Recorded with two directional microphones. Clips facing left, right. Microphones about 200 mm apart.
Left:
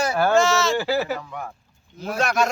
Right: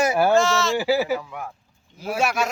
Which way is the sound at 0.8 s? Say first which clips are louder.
Right 2 dB; 10° right (ahead or behind).